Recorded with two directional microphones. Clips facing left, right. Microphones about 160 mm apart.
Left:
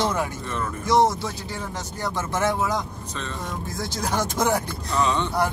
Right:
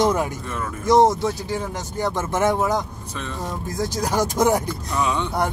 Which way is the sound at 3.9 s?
10° right (ahead or behind).